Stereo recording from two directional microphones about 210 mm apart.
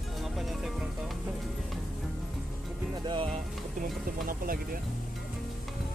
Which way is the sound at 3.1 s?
25° right (ahead or behind).